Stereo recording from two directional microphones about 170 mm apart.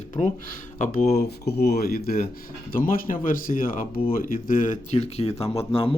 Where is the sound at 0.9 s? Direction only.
65° left (ahead or behind); by 6.0 s 30° left (ahead or behind).